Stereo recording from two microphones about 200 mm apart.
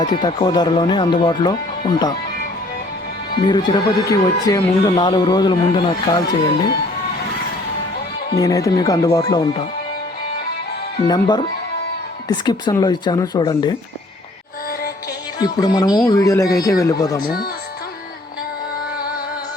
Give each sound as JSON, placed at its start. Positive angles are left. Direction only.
{"t": 0.0, "sound": "speech", "side_deg": 25}
{"t": 3.4, "sound": "speech", "side_deg": 20}
{"t": 8.4, "sound": "speech", "side_deg": 20}
{"t": 11.1, "sound": "speech", "side_deg": 20}
{"t": 15.4, "sound": "speech", "side_deg": 20}
{"t": 17.2, "sound": "speech", "side_deg": 50}
{"t": 18.9, "sound": "music", "side_deg": 50}